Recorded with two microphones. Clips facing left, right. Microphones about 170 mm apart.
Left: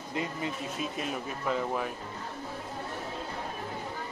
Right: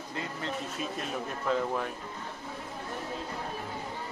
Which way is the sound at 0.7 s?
5° left (ahead or behind).